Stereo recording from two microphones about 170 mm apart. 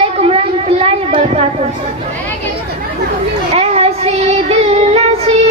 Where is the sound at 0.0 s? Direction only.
35° right (ahead or behind).